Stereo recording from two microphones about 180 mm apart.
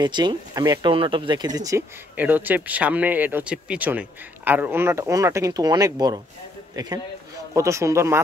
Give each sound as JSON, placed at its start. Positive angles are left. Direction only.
{"t": 0.0, "sound": "a man's voice", "side_deg": -25}